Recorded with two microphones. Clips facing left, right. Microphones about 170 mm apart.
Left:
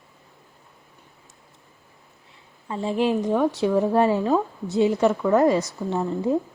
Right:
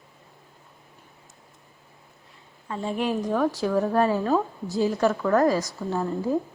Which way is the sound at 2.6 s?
25° left (ahead or behind).